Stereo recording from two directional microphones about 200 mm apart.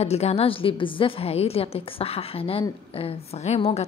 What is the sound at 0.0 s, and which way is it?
A woman's voice, 30° left (ahead or behind).